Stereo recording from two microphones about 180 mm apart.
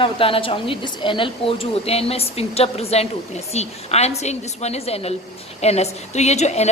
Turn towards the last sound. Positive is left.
turn(degrees=40)  # may be behind; listen again after turning